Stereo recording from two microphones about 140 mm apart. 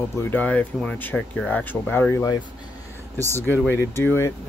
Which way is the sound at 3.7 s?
15° left (ahead or behind).